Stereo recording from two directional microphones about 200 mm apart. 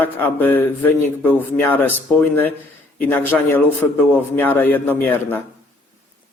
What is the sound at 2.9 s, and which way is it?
Speech, 10° left (ahead or behind).